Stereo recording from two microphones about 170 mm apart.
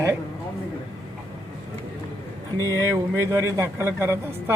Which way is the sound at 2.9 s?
15° right (ahead or behind).